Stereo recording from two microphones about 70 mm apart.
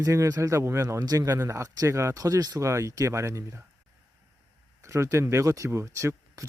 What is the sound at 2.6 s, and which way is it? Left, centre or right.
Speech, right.